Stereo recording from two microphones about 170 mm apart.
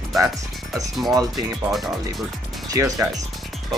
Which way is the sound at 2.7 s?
20° right (ahead or behind).